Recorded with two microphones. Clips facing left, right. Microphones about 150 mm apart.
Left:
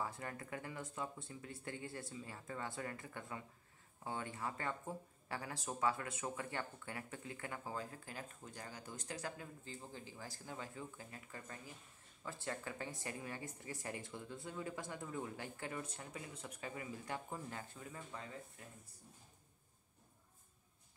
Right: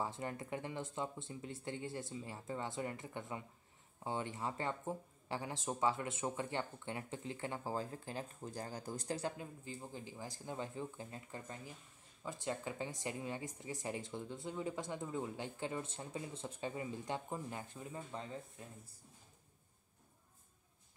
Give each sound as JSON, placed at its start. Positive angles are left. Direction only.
{"t": 0.0, "sound": "speech", "side_deg": -25}
{"t": 9.4, "sound": "speech", "side_deg": -15}